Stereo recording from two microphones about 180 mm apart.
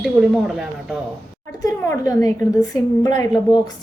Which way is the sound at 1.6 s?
20° left (ahead or behind).